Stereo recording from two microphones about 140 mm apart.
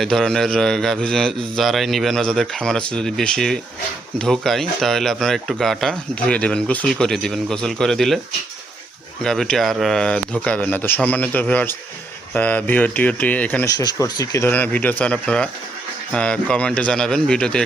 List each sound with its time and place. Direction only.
0.0 s speech: 5° left (ahead or behind)
9.2 s speech: 5° left (ahead or behind)
13.7 s speech: 25° left (ahead or behind)
14.5 s speech: 10° left (ahead or behind)